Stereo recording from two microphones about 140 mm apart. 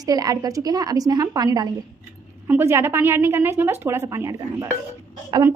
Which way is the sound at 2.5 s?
15° right (ahead or behind).